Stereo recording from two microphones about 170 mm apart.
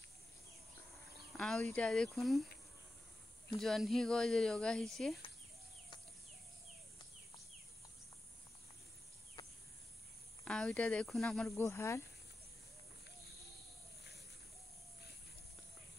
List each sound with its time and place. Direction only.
1.3 s speech: 5° left (ahead or behind)
3.4 s speech: centre (ahead or behind)
10.4 s speech: 5° left (ahead or behind)
11.5 s speech: 15° left (ahead or behind)